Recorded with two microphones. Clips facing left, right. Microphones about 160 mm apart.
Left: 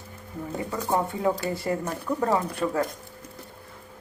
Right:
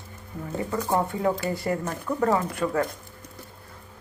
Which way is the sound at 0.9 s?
10° left (ahead or behind).